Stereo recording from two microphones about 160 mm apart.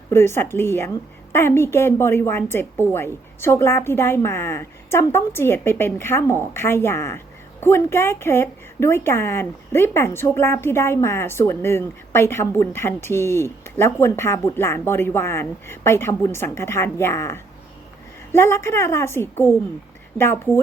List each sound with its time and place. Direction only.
0.1 s a woman's voice: 15° left (ahead or behind)